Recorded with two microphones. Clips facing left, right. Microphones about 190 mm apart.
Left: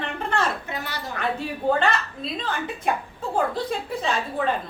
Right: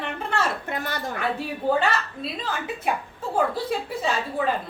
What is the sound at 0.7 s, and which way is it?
Speech, 50° right (ahead or behind).